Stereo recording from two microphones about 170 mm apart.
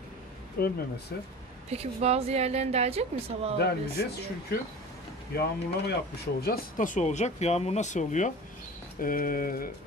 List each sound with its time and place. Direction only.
0.6 s mantra: 60° left (ahead or behind)
1.1 s speech: 70° left (ahead or behind)
1.7 s a woman's voice: 40° right (ahead or behind)
3.5 s speech: 70° left (ahead or behind)
6.4 s speech: 55° left (ahead or behind)
9.0 s mantra: 55° left (ahead or behind)